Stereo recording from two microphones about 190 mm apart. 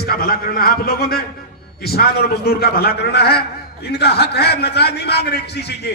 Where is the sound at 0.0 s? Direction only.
55° left (ahead or behind).